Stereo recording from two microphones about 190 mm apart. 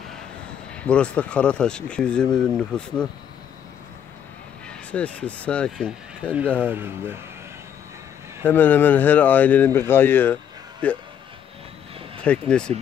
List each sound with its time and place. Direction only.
0.7 s speech: 5° left (ahead or behind)
4.6 s speech: 5° left (ahead or behind)
6.7 s speech: 10° right (ahead or behind)
8.5 s speech: 10° left (ahead or behind)
12.2 s speech: 5° left (ahead or behind)